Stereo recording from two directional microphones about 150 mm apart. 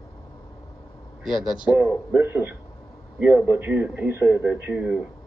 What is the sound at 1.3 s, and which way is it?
Speech, 30° left (ahead or behind).